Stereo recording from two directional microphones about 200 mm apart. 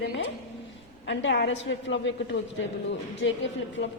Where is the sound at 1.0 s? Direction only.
60° left (ahead or behind).